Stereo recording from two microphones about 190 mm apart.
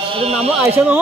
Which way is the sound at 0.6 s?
10° right (ahead or behind).